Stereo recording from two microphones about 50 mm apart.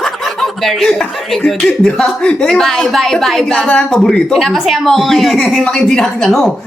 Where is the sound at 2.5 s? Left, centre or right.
Centre.